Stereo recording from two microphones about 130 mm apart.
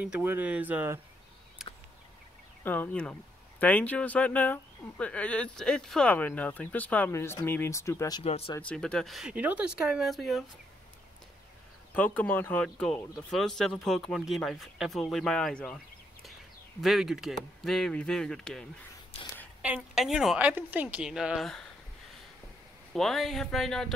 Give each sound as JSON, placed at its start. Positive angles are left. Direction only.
{"t": 0.0, "sound": "speech", "side_deg": -15}
{"t": 2.6, "sound": "speech", "side_deg": 15}
{"t": 8.2, "sound": "speech", "side_deg": 50}
{"t": 8.5, "sound": "speech", "side_deg": 10}
{"t": 9.3, "sound": "speech", "side_deg": -10}
{"t": 11.9, "sound": "speech", "side_deg": 10}
{"t": 16.8, "sound": "speech", "side_deg": -5}
{"t": 19.1, "sound": "a woman's voice", "side_deg": 50}
{"t": 19.6, "sound": "speech", "side_deg": -5}
{"t": 22.9, "sound": "speech", "side_deg": 0}